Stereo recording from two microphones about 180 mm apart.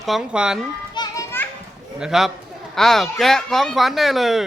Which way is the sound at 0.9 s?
25° left (ahead or behind).